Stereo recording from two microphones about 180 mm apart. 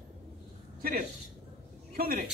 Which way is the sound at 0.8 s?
50° right (ahead or behind).